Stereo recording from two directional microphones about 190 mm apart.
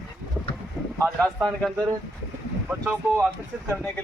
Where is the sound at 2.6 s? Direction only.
10° right (ahead or behind).